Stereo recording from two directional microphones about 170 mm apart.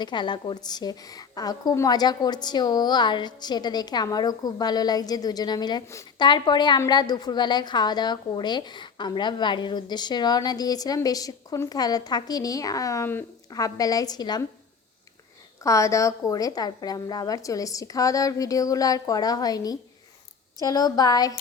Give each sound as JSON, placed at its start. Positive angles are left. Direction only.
{"t": 0.0, "sound": "a woman's voice", "side_deg": 25}
{"t": 15.6, "sound": "a woman's voice", "side_deg": 20}